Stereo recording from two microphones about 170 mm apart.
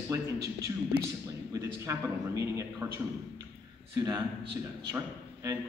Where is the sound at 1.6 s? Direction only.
15° right (ahead or behind).